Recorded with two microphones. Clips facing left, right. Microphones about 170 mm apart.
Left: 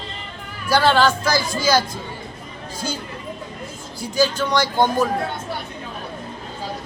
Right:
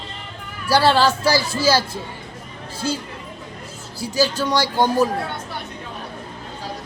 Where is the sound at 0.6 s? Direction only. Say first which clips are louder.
Even; 35° right (ahead or behind).